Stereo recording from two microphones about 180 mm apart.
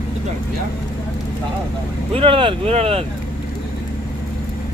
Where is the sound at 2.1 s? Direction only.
30° right (ahead or behind).